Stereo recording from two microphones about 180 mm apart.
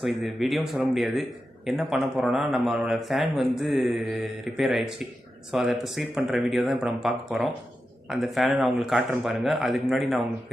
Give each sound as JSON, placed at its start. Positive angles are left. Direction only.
{"t": 0.0, "sound": "speech", "side_deg": 0}